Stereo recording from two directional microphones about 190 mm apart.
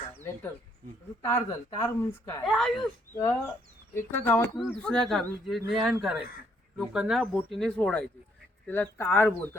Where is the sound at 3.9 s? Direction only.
10° left (ahead or behind).